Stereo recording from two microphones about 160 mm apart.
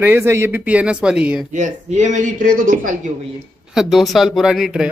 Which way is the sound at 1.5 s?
50° right (ahead or behind).